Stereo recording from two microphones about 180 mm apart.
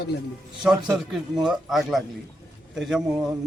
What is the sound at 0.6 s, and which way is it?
Speech, centre (ahead or behind).